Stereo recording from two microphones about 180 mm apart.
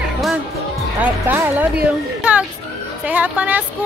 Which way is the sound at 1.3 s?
10° right (ahead or behind).